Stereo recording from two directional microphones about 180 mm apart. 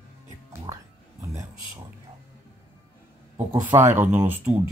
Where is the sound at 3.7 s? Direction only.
10° right (ahead or behind).